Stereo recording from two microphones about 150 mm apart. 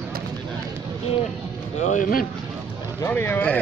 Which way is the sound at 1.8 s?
55° left (ahead or behind).